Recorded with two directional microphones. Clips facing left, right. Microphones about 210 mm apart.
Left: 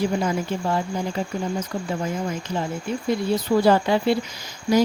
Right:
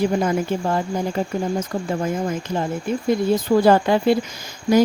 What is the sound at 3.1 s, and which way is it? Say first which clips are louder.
Speech: right 3 dB; 50° right (ahead or behind).